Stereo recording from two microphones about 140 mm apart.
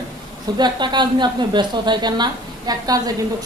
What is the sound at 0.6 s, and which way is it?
A woman's voice, 30° right (ahead or behind).